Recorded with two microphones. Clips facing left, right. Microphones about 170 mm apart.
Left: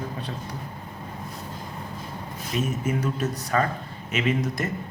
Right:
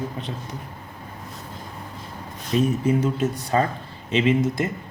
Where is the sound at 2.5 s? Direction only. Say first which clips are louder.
Right 6 dB; 35° right (ahead or behind).